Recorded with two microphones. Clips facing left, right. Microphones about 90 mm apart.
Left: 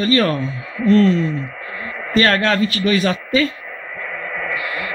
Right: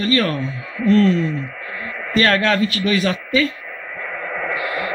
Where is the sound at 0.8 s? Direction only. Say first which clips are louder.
Left 1 dB; centre (ahead or behind).